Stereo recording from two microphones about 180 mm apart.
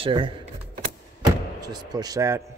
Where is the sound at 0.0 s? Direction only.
30° right (ahead or behind).